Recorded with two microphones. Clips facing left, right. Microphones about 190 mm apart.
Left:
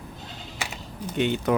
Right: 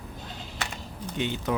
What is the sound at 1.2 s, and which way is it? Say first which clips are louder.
Speech: left 6 dB; 60° left (ahead or behind).